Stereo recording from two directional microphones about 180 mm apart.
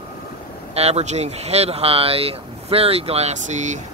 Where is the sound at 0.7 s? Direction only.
35° right (ahead or behind).